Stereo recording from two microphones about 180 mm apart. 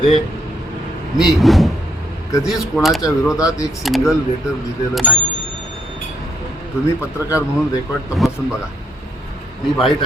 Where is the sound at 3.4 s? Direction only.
20° left (ahead or behind).